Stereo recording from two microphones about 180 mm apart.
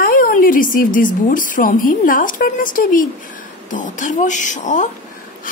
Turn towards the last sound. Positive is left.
turn(degrees=45)  # may be behind; listen again after turning